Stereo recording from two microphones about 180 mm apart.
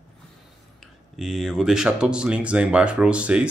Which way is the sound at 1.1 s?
Centre (ahead or behind).